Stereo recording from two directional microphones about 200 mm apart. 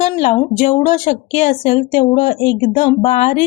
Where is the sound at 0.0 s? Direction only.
30° left (ahead or behind).